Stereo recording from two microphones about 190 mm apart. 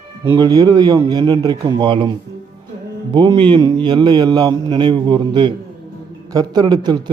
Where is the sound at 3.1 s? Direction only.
25° right (ahead or behind).